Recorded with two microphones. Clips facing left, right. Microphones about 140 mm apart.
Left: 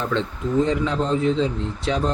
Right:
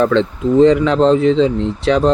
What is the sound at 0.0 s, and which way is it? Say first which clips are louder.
Speech: right 10 dB; 85° right.